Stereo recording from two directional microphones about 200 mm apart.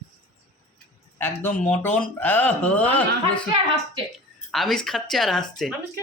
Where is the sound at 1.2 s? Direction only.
10° left (ahead or behind).